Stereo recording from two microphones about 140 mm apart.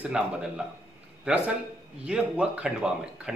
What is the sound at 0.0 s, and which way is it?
Speech, 5° right (ahead or behind).